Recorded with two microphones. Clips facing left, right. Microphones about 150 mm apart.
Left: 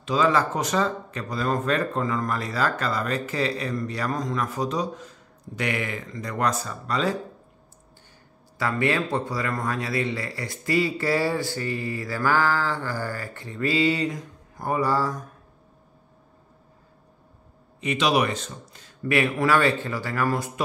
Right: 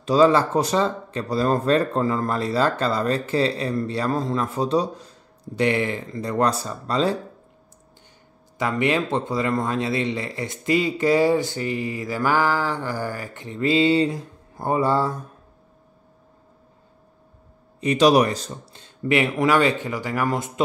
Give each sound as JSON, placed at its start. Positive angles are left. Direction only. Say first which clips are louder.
{"t": 0.0, "sound": "speech", "louder": "right 5 dB", "side_deg": -35}
{"t": 8.5, "sound": "speech", "louder": "right 2 dB", "side_deg": -20}
{"t": 17.7, "sound": "speech", "louder": "right 6 dB", "side_deg": -40}